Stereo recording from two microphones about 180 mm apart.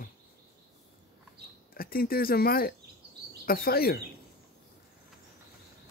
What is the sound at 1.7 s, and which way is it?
Speech, 55° left (ahead or behind).